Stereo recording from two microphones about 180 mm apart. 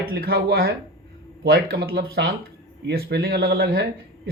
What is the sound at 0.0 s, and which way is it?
A man's voice, 60° right (ahead or behind).